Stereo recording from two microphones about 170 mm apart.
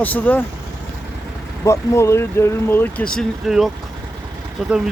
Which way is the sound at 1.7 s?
15° left (ahead or behind).